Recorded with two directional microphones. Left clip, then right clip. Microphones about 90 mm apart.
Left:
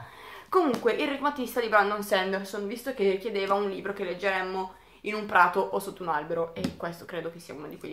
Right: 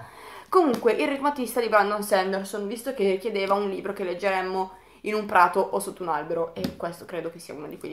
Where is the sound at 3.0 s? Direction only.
35° right (ahead or behind).